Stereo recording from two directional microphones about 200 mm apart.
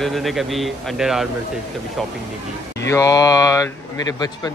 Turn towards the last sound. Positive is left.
turn(degrees=15)  # may be behind; listen again after turning